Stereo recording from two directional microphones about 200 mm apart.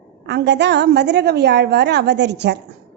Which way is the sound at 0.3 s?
60° right (ahead or behind).